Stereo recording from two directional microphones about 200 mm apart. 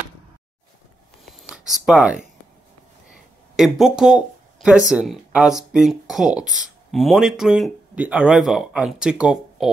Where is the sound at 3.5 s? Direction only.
Centre (ahead or behind).